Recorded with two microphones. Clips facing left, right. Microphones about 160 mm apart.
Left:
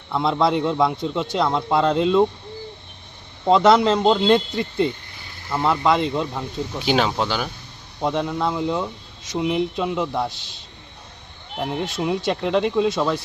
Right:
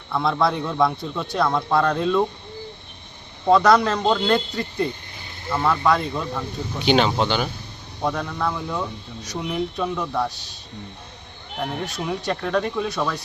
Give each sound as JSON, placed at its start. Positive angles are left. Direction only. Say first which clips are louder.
{"t": 0.1, "sound": "a man's voice", "louder": "left 2 dB", "side_deg": 20}
{"t": 3.5, "sound": "a man's voice", "louder": "left 1 dB", "side_deg": 25}
{"t": 6.7, "sound": "speech", "louder": "right 2 dB", "side_deg": 0}
{"t": 8.0, "sound": "a man's voice", "louder": "left 2 dB", "side_deg": 20}
{"t": 11.6, "sound": "a man's voice", "louder": "left 3 dB", "side_deg": 20}